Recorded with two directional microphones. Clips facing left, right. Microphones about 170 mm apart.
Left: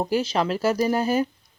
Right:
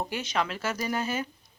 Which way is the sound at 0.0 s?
35° left (ahead or behind).